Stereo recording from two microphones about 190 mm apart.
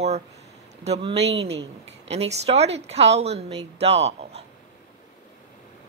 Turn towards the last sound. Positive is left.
turn(degrees=-35)  # may be behind; listen again after turning